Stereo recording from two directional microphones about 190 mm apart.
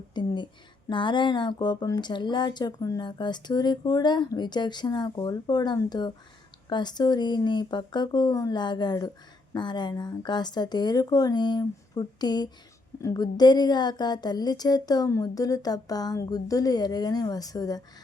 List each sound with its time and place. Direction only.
0.1 s a woman's voice: 25° left (ahead or behind)